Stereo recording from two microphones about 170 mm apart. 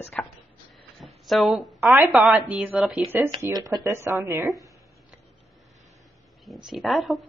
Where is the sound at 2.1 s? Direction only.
5° right (ahead or behind).